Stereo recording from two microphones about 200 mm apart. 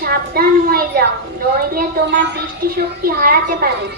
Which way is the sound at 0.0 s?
50° right (ahead or behind).